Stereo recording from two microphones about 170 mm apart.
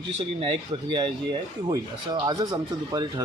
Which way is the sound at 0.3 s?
30° right (ahead or behind).